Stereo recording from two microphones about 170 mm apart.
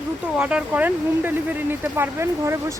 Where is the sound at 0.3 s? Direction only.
5° right (ahead or behind).